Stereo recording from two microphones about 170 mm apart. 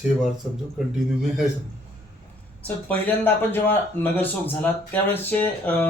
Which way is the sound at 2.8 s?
10° left (ahead or behind).